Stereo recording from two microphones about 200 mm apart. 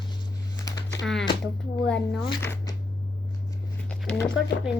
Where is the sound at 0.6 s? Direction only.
15° left (ahead or behind).